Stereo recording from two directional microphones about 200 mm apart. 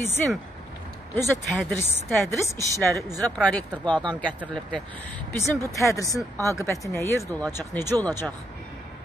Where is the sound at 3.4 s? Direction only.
5° left (ahead or behind).